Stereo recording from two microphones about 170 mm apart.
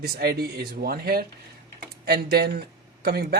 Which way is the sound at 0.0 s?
65° right (ahead or behind).